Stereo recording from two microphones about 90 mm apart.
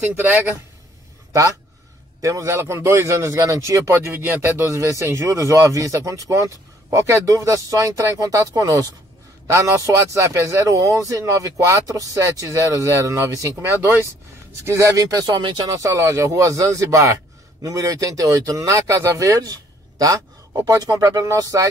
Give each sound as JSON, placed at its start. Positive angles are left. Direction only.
{"t": 2.2, "sound": "speech", "side_deg": -35}
{"t": 4.6, "sound": "speech", "side_deg": -35}
{"t": 14.6, "sound": "speech", "side_deg": -35}
{"t": 15.7, "sound": "speech", "side_deg": -35}